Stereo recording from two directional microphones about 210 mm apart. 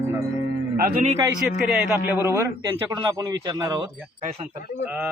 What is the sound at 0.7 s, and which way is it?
Speech, 45° right (ahead or behind).